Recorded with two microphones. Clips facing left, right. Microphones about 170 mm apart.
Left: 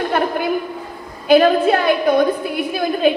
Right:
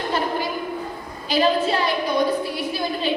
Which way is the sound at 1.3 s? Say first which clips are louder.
Left 8 dB; 55° left (ahead or behind).